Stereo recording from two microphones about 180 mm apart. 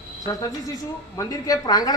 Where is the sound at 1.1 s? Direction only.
20° left (ahead or behind).